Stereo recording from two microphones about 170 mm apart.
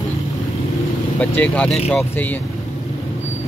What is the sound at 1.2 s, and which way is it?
Speech, 10° left (ahead or behind).